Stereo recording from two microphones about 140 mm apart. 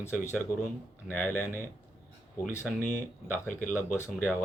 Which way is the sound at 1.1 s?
15° left (ahead or behind).